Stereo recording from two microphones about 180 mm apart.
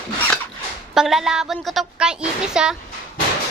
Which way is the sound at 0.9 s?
Centre (ahead or behind).